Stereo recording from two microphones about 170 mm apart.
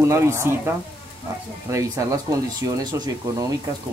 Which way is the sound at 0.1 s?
15° right (ahead or behind).